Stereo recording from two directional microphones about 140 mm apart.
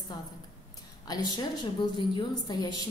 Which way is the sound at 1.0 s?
30° left (ahead or behind).